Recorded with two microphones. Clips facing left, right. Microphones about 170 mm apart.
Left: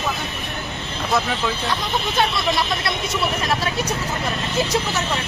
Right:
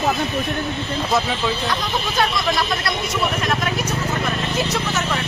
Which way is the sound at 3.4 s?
35° left (ahead or behind).